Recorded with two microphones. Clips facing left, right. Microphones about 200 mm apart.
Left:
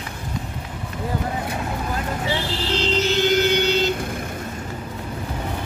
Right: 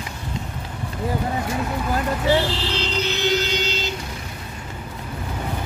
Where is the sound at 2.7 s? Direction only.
50° left (ahead or behind).